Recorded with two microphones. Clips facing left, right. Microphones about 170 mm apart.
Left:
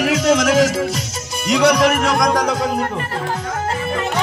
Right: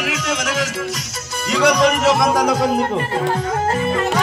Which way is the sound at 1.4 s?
10° left (ahead or behind).